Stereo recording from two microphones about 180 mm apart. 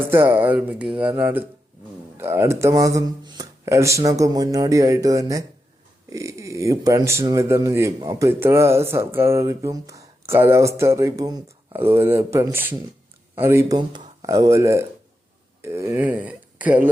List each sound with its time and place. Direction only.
0.1 s speech: 10° right (ahead or behind)